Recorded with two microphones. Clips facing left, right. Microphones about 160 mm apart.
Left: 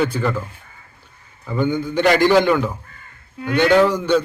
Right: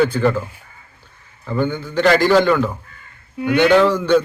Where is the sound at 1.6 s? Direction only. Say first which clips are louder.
Even; 15° left (ahead or behind).